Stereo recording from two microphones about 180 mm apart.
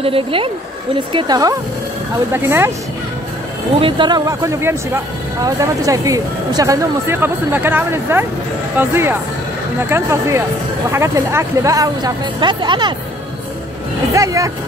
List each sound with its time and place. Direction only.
0.0 s a woman's voice: 30° right (ahead or behind); by 2.7 s 15° right (ahead or behind)
3.8 s speech: 25° right (ahead or behind)
14.1 s speech: 15° right (ahead or behind)